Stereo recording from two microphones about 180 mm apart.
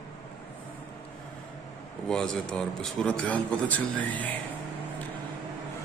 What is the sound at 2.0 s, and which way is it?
A man's voice, 5° left (ahead or behind).